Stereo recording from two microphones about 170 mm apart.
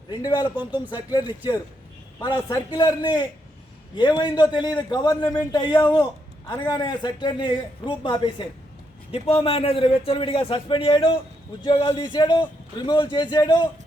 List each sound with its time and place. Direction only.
0.1 s a man's voice: 25° left (ahead or behind)
0.5 s speech: 10° right (ahead or behind)
2.1 s a man's voice: 20° left (ahead or behind)